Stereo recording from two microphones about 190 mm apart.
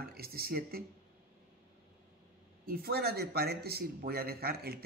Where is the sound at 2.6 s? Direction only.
50° right (ahead or behind).